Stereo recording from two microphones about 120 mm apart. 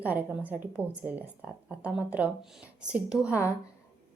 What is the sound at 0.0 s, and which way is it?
A woman's voice, 15° right (ahead or behind).